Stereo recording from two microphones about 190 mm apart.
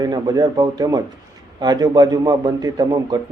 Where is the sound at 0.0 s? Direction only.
20° right (ahead or behind).